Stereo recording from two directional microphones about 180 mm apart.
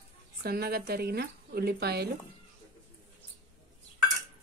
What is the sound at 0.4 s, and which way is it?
Speech, 60° right (ahead or behind).